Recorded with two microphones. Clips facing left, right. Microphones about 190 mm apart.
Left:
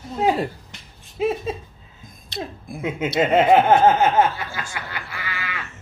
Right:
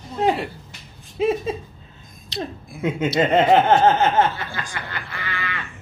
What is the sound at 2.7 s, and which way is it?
Speech, 55° left (ahead or behind).